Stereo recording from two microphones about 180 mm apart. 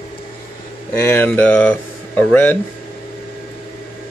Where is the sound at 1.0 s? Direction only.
10° left (ahead or behind).